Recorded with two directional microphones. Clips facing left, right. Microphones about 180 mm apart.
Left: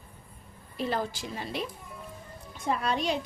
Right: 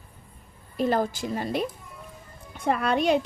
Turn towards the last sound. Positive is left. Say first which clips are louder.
# right 6 dB
turn(degrees=-60)  # may be behind; listen again after turning